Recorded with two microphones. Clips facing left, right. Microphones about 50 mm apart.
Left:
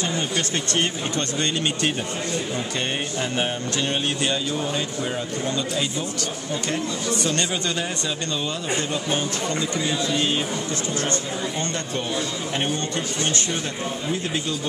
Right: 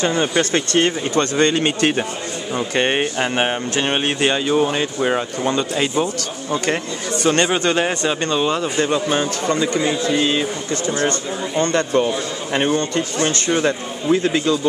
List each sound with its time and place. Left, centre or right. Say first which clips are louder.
0.0 s speech: right 7 dB; right
2.7 s music: right 8 dB; right
3.7 s a man's voice: right 5 dB; right
7.2 s a man's voice: right 12 dB; right
10.9 s a man's voice: right 8 dB; right
11.7 s a man's voice: right 11 dB; right
12.5 s speech: right 9 dB; right